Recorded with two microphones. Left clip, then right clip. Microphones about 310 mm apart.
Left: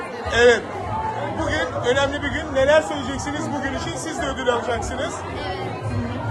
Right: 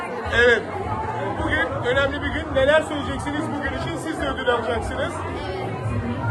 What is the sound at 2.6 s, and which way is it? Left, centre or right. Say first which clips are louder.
Speech: left 1 dB; left.